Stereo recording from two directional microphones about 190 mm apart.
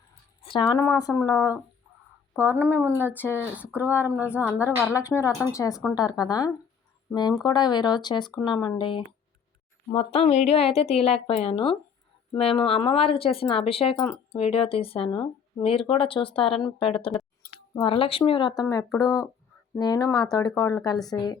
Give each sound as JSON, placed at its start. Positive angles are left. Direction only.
{"t": 0.4, "sound": "speech", "side_deg": 25}
{"t": 2.3, "sound": "speech", "side_deg": -10}
{"t": 2.6, "sound": "a woman's voice", "side_deg": 10}